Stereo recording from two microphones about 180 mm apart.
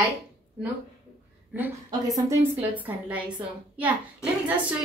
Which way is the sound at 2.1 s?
15° right (ahead or behind).